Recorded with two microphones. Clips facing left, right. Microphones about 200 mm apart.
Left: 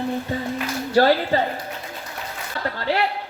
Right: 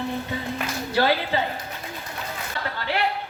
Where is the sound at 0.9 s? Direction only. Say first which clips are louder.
Left 5 dB; 45° left (ahead or behind).